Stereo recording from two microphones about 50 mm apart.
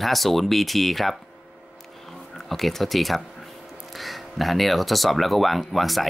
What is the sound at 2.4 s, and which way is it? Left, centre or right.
Speech, centre.